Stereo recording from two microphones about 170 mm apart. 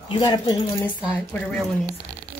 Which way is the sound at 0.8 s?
10° left (ahead or behind).